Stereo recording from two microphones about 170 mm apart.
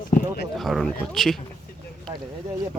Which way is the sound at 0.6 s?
Centre (ahead or behind).